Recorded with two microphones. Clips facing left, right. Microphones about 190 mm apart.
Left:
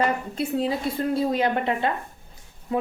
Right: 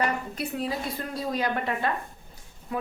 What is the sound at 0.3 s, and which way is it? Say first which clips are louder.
A woman's voice: left 5 dB; 25° left (ahead or behind).